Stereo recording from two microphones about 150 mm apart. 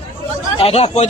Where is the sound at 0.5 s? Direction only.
40° left (ahead or behind).